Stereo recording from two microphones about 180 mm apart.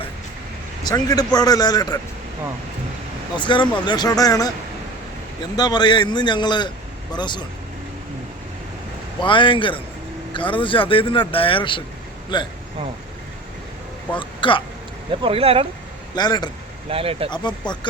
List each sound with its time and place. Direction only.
0.9 s speech: 20° left (ahead or behind)
3.3 s speech: 25° left (ahead or behind)
5.5 s speech: 25° left (ahead or behind)
9.2 s speech: 25° left (ahead or behind)
14.2 s speech: 30° left (ahead or behind)
15.2 s speech: 30° right (ahead or behind)
16.1 s speech: 25° left (ahead or behind)
16.9 s speech: 30° right (ahead or behind)
17.3 s speech: 25° left (ahead or behind)